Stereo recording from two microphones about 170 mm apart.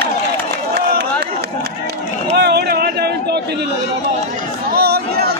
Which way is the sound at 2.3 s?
80° right.